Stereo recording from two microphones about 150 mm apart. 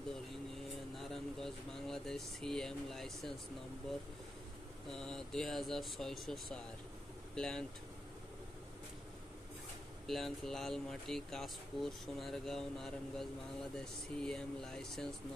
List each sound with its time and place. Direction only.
0.9 s speech: centre (ahead or behind)
4.8 s speech: 5° left (ahead or behind)
10.0 s speech: centre (ahead or behind)